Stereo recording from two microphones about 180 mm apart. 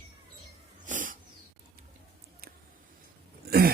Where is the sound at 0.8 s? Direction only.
45° right (ahead or behind).